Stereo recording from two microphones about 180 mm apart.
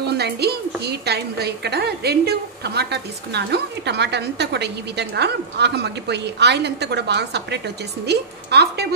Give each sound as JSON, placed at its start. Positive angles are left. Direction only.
{"t": 0.0, "sound": "a woman's voice", "side_deg": -65}